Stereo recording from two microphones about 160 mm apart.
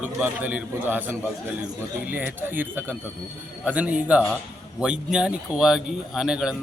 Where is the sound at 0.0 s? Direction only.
10° right (ahead or behind).